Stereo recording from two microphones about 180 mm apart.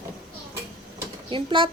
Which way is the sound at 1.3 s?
30° right (ahead or behind).